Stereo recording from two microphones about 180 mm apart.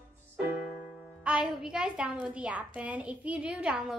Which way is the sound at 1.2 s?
5° right (ahead or behind).